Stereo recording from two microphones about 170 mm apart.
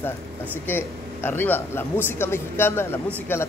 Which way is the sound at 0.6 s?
15° left (ahead or behind).